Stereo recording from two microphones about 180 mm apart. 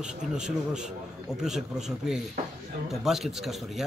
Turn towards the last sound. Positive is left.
turn(degrees=0)  # may be behind; listen again after turning